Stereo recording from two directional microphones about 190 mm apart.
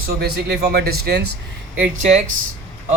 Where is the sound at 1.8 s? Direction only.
40° right (ahead or behind).